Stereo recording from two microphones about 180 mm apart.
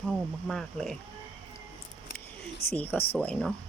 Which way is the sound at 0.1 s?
Centre (ahead or behind).